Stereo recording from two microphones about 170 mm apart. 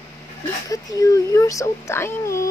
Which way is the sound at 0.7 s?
20° left (ahead or behind).